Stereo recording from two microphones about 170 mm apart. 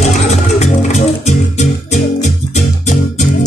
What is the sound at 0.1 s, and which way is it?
Music, 40° left (ahead or behind).